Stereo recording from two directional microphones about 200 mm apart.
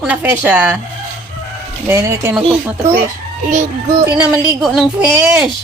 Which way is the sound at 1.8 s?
15° right (ahead or behind).